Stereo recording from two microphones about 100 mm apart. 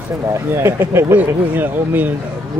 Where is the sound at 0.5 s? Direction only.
25° right (ahead or behind).